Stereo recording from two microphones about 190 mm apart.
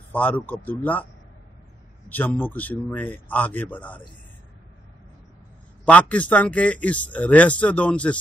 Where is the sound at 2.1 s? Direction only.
10° left (ahead or behind).